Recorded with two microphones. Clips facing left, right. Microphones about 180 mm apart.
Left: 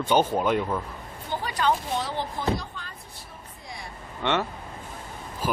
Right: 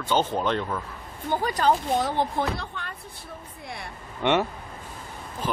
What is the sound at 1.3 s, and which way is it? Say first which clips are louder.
Speech: right 3 dB; 45° right (ahead or behind).